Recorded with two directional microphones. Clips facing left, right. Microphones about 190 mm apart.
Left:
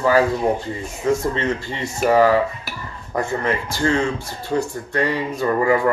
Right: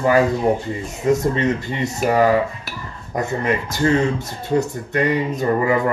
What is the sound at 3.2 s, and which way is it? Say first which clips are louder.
Speech: right 1 dB; 20° right (ahead or behind).